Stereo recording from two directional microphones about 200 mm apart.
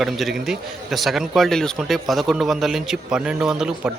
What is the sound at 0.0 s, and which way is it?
A man's voice, centre (ahead or behind).